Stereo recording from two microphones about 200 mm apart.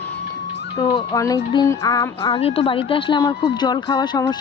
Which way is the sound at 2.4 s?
30° left (ahead or behind).